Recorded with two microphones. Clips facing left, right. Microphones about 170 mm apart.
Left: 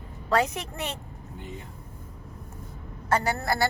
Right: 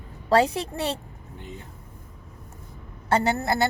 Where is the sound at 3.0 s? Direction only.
25° right (ahead or behind).